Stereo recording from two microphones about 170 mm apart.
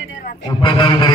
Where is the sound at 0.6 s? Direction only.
25° left (ahead or behind).